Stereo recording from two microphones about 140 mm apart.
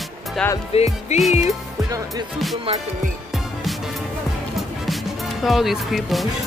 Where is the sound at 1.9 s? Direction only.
25° right (ahead or behind).